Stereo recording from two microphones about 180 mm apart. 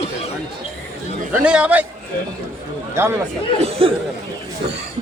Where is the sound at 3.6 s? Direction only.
35° right (ahead or behind).